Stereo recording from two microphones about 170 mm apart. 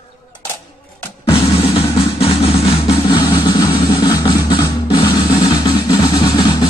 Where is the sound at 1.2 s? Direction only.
35° left (ahead or behind).